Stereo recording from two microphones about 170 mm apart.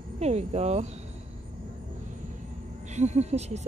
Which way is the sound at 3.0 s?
40° right (ahead or behind).